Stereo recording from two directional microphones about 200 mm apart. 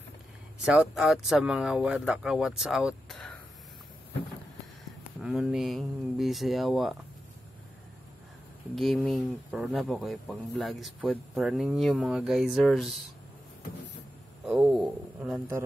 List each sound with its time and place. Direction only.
0.7 s speech: 5° right (ahead or behind)
5.2 s speech: 5° right (ahead or behind)
8.7 s speech: centre (ahead or behind)
14.4 s speech: 5° right (ahead or behind)